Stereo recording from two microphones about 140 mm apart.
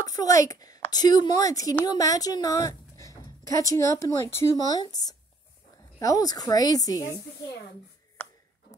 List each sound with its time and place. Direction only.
0.0 s a woman's voice: 25° left (ahead or behind)
8.2 s chopping: 15° left (ahead or behind)